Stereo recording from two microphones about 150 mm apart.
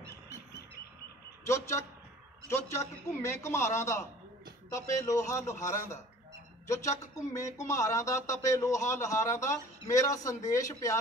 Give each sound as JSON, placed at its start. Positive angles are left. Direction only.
{"t": 1.5, "sound": "a man's voice", "side_deg": 20}